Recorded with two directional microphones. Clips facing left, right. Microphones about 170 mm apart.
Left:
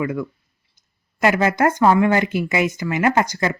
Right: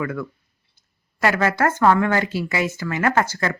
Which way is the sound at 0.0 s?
15° left (ahead or behind).